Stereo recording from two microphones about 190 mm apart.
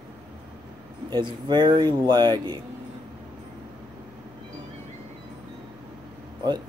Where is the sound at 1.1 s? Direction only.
25° right (ahead or behind).